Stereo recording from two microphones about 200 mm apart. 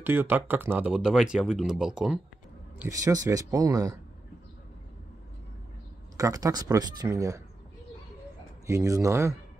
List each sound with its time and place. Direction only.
0.0 s speech: 10° right (ahead or behind)
2.8 s speech: 15° right (ahead or behind)
6.1 s speech: 15° right (ahead or behind)
8.6 s speech: 15° right (ahead or behind)